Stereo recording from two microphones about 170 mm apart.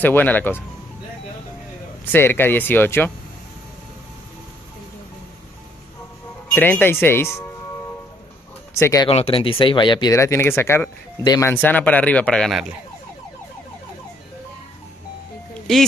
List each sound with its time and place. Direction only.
0.0 s speech: 10° left (ahead or behind)
2.1 s speech: 15° left (ahead or behind)
6.5 s speech: 10° left (ahead or behind)
8.7 s speech: 15° left (ahead or behind)
9.0 s speech: 35° left (ahead or behind)
10.1 s speech: 15° left (ahead or behind); by 12.7 s centre (ahead or behind)
15.7 s speech: 5° left (ahead or behind)